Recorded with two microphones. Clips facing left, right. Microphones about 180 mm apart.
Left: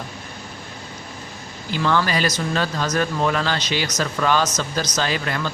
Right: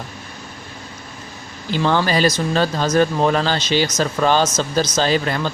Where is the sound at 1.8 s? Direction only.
30° right (ahead or behind).